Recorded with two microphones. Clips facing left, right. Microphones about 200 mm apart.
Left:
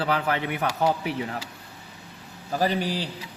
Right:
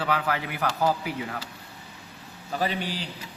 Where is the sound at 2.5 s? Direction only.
35° left (ahead or behind).